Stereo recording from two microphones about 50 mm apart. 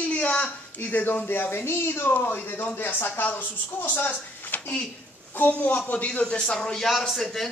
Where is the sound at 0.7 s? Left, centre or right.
Left.